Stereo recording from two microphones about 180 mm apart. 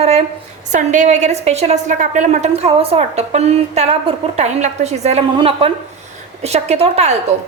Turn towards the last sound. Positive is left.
turn(degrees=-35)  # may be behind; listen again after turning